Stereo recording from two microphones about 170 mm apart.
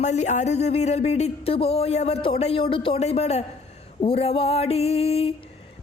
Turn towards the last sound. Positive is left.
turn(degrees=35)  # may be behind; listen again after turning